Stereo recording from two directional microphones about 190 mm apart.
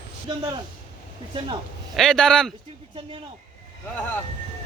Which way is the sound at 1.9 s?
5° left (ahead or behind).